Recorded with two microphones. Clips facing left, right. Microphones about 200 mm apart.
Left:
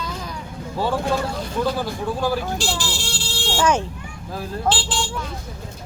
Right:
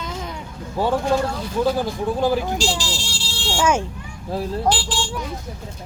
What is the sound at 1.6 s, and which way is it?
Speech, 20° right (ahead or behind).